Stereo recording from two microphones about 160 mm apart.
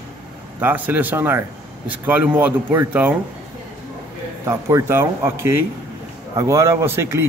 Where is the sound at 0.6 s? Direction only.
10° right (ahead or behind).